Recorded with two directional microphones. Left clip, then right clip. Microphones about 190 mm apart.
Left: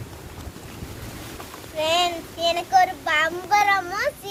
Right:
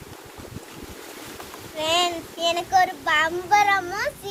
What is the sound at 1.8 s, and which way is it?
Child singing, 10° left (ahead or behind).